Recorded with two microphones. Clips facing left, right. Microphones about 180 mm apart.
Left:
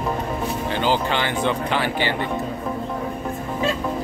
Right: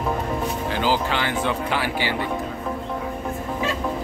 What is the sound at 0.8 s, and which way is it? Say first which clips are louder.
Speech: left 1 dB; 5° right (ahead or behind).